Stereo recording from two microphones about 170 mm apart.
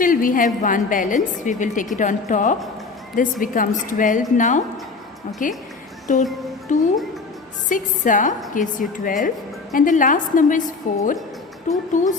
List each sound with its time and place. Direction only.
0.0 s a woman's voice: 55° left (ahead or behind)